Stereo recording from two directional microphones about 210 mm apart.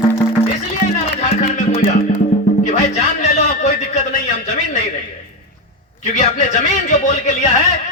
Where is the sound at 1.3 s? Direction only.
35° left (ahead or behind).